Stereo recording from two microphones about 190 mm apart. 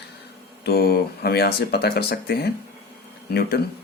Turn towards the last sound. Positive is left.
turn(degrees=55)  # may be behind; listen again after turning